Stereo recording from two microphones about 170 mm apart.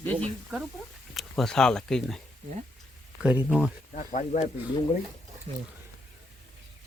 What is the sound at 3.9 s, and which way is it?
Speech, 45° left (ahead or behind).